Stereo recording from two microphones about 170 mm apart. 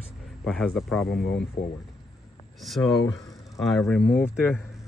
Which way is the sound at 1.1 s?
70° left (ahead or behind).